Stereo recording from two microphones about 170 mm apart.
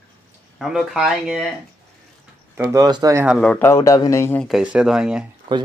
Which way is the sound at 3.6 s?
15° left (ahead or behind).